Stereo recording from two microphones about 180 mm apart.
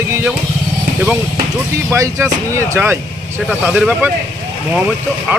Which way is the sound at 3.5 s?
Centre (ahead or behind).